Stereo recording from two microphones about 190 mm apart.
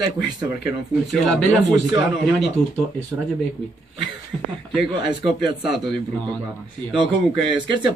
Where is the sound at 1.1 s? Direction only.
Centre (ahead or behind).